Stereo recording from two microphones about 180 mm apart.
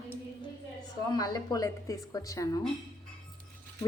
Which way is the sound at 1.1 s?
20° left (ahead or behind).